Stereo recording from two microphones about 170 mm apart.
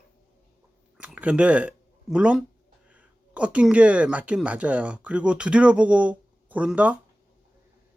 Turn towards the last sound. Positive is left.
turn(degrees=-10)  # may be behind; listen again after turning